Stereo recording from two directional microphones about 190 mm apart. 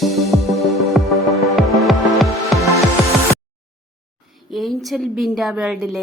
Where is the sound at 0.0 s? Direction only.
Centre (ahead or behind).